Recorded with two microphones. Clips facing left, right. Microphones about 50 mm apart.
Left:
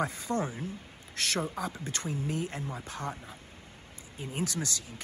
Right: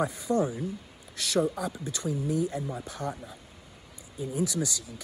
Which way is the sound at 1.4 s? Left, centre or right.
Left.